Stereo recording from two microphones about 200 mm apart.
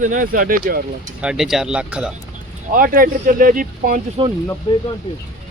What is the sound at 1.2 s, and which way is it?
Speech, 5° right (ahead or behind).